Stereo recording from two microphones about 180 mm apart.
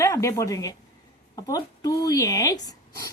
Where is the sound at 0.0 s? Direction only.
15° left (ahead or behind).